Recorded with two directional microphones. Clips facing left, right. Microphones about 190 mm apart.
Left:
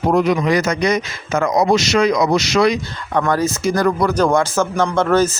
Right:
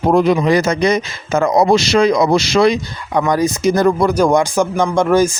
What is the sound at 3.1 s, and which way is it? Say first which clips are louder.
Speech: right 2 dB; 15° right (ahead or behind).